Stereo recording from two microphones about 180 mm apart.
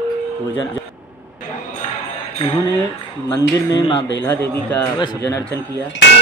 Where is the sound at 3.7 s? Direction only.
30° left (ahead or behind).